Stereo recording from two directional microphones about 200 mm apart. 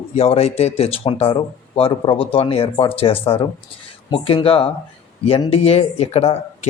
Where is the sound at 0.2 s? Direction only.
30° left (ahead or behind).